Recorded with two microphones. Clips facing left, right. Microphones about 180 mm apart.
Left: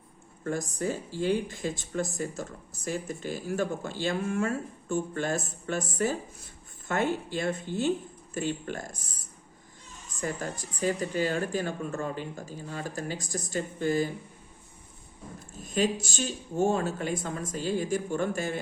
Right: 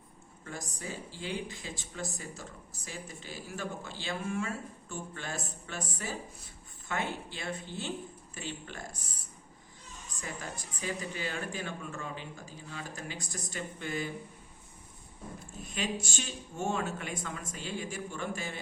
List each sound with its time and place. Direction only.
0.4 s speech: 50° left (ahead or behind)
10.2 s speech: 45° left (ahead or behind)
15.5 s speech: 40° left (ahead or behind)